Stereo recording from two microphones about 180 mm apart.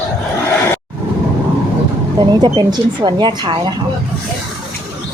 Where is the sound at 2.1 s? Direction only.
25° right (ahead or behind).